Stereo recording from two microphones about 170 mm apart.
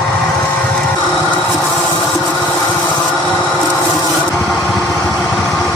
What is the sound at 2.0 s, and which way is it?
Printer, 10° left (ahead or behind).